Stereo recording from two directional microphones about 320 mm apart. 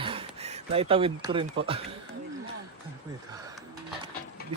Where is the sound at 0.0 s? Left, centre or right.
Centre.